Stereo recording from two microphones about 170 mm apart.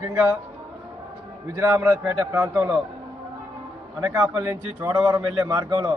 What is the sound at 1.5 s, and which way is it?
A man's voice, 15° right (ahead or behind).